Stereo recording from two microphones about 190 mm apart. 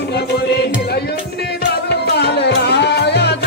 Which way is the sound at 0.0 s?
60° left (ahead or behind).